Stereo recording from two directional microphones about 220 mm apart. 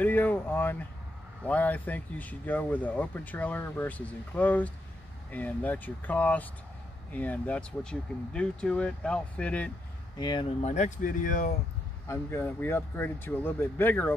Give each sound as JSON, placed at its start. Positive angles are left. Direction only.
{"t": 0.0, "sound": "a sound", "side_deg": 10}
{"t": 1.4, "sound": "speech", "side_deg": 5}
{"t": 10.1, "sound": "speech", "side_deg": 20}
{"t": 12.1, "sound": "speech", "side_deg": 10}